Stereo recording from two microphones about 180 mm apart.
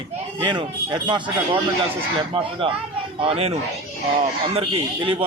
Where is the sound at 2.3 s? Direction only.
30° right (ahead or behind).